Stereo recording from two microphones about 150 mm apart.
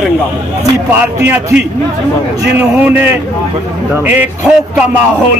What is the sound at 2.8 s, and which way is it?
A man's voice, 15° right (ahead or behind).